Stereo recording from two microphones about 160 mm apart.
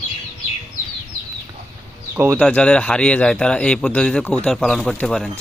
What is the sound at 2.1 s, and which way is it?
Speech, 15° right (ahead or behind).